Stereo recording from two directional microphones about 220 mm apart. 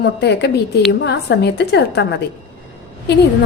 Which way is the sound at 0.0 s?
50° left (ahead or behind).